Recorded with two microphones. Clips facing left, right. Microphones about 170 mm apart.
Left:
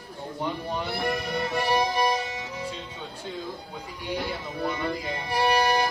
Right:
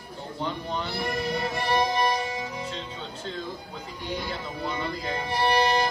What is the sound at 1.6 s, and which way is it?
Music, 10° left (ahead or behind).